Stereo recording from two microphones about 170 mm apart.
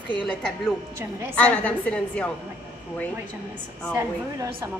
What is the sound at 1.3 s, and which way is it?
Speech, 10° left (ahead or behind).